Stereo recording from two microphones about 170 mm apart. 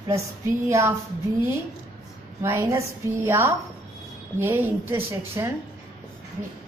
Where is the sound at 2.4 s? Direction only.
15° right (ahead or behind).